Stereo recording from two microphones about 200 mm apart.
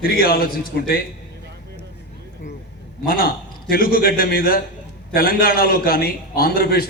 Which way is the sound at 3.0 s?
45° left (ahead or behind).